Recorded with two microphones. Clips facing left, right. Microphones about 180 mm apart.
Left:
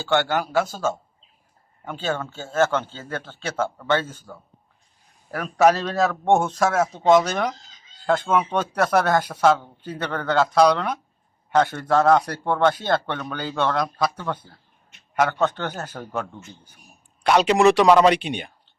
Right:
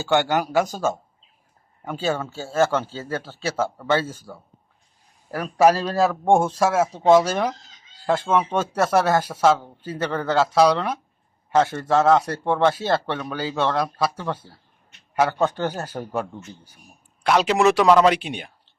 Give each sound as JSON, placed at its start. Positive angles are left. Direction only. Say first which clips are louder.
{"t": 0.1, "sound": "a man's voice", "louder": "right 1 dB", "side_deg": -15}
{"t": 5.4, "sound": "a man's voice", "louder": "right 1 dB", "side_deg": -10}
{"t": 8.2, "sound": "speech", "louder": "right 3 dB", "side_deg": -30}
{"t": 8.9, "sound": "speech", "louder": "right 1 dB", "side_deg": -5}
{"t": 12.1, "sound": "speech", "louder": "even", "side_deg": -25}
{"t": 12.5, "sound": "a man's voice", "louder": "even", "side_deg": -5}
{"t": 17.2, "sound": "speech", "louder": "left 2 dB", "side_deg": 0}